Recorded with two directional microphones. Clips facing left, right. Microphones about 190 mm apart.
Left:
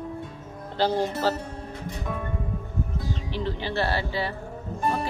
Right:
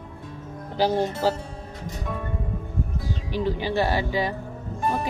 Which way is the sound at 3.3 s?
15° right (ahead or behind).